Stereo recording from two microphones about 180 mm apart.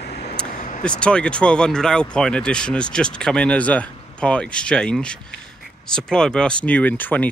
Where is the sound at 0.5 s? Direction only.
45° left (ahead or behind).